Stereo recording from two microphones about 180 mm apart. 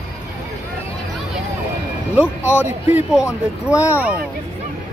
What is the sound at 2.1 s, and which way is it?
Speech, 10° right (ahead or behind).